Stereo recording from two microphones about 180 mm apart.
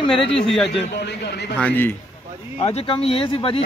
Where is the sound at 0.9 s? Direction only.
65° left (ahead or behind).